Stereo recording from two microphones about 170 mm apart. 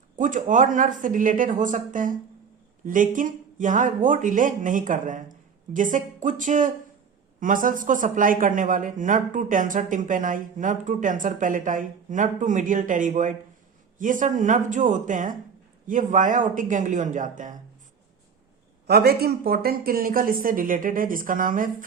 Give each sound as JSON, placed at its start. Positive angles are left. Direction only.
{"t": 0.2, "sound": "speech", "side_deg": -50}
{"t": 18.9, "sound": "speech", "side_deg": -70}